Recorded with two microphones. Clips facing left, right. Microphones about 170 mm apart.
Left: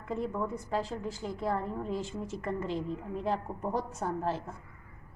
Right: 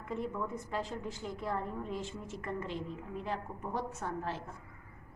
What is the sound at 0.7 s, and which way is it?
A woman's voice, 35° left (ahead or behind).